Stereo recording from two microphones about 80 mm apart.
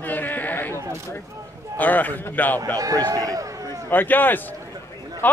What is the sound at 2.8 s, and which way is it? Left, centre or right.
Speech, right.